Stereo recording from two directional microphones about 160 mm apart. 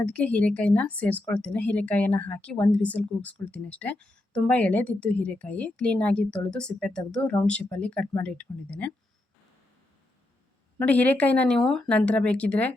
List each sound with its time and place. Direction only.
0.0 s a woman's voice: 5° left (ahead or behind)
10.8 s a woman's voice: 10° left (ahead or behind)